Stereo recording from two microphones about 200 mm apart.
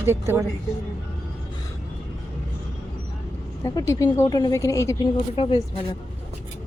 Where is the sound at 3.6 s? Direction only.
15° left (ahead or behind).